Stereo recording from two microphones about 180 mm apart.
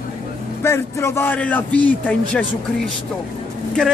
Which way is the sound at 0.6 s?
15° left (ahead or behind).